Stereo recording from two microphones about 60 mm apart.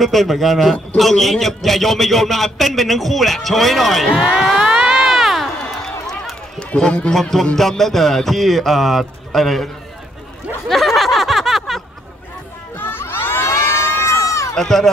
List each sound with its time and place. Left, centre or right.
0.0 s a man's voice: centre
4.1 s speech: centre
4.6 s a sound: centre
6.8 s a man's voice: centre
7.2 s a man's voice: centre
10.7 s a sound: centre
12.7 s crowd: left
14.5 s speech: centre